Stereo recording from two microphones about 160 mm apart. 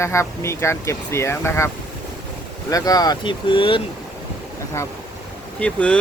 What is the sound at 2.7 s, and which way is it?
Speech, 20° left (ahead or behind).